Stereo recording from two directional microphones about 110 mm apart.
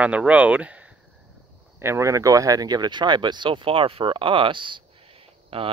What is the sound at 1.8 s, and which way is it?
Speech, 25° right (ahead or behind).